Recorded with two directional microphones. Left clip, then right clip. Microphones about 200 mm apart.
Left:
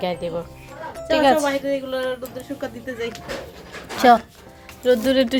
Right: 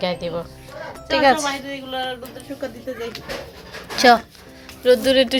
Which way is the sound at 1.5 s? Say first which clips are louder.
Left 4 dB; 50° left (ahead or behind).